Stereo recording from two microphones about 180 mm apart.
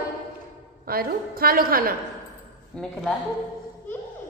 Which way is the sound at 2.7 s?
5° left (ahead or behind).